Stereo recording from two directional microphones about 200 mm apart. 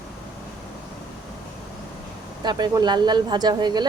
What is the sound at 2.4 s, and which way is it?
Speech, 20° right (ahead or behind).